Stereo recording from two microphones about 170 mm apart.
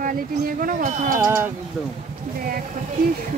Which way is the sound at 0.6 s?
50° right (ahead or behind).